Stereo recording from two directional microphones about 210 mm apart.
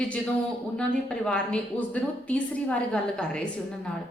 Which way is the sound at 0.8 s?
5° left (ahead or behind).